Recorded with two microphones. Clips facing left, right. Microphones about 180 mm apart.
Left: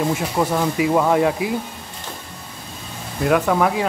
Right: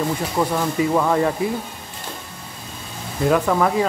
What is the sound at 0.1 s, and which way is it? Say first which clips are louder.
Speech: left 1 dB; 5° left (ahead or behind).